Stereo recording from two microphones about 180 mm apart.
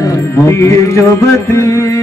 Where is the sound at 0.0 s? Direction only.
15° left (ahead or behind).